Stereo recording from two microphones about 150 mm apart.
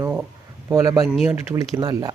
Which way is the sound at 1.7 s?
25° right (ahead or behind).